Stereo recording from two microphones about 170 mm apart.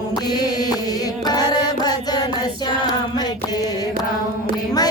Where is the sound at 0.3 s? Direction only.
25° left (ahead or behind).